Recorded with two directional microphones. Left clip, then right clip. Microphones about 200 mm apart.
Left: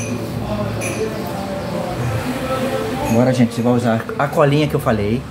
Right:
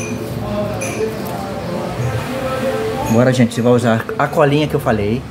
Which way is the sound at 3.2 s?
30° right (ahead or behind).